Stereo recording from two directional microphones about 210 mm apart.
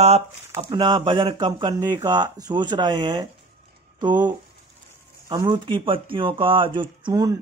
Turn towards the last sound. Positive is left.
turn(degrees=-15)  # may be behind; listen again after turning